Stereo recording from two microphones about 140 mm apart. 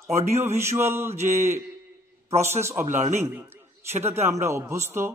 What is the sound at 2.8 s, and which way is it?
Speech, 55° right (ahead or behind).